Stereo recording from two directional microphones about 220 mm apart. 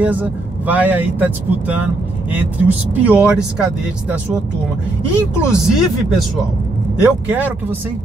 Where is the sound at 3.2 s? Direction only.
5° right (ahead or behind).